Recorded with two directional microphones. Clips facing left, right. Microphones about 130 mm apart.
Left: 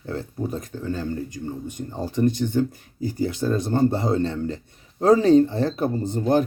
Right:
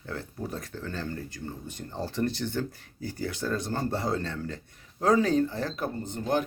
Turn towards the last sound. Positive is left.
turn(degrees=35)  # may be behind; listen again after turning